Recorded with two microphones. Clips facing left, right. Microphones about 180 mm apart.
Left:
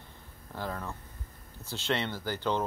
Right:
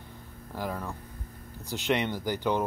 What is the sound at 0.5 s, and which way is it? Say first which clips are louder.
Speech: right 3 dB; 10° right (ahead or behind).